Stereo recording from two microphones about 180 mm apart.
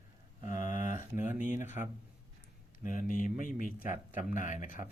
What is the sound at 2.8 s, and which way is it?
Speech, 45° left (ahead or behind).